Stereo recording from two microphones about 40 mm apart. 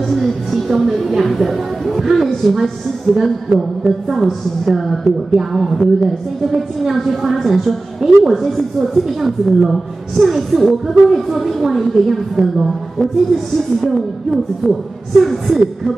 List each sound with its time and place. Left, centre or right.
0.1 s a woman's voice: centre
3.1 s speech: centre
4.2 s a woman's voice: centre
12.4 s speech: centre
13.7 s a woman's voice: centre